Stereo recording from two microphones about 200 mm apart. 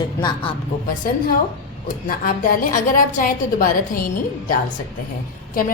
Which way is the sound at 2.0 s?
45° left (ahead or behind).